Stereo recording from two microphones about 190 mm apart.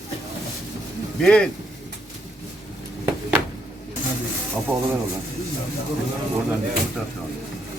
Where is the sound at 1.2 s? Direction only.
5° left (ahead or behind).